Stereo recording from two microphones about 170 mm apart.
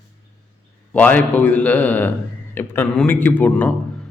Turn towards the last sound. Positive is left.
turn(degrees=10)  # may be behind; listen again after turning